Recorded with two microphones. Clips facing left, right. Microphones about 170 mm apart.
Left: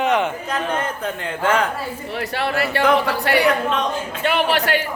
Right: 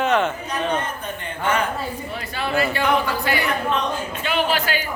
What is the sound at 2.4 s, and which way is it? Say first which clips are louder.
Speech: left 1 dB; 70° left (ahead or behind).